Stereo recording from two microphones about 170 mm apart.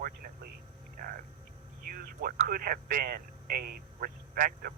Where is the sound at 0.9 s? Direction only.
55° right (ahead or behind).